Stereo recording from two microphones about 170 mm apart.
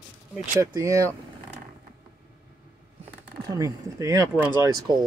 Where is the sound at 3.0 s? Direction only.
20° right (ahead or behind).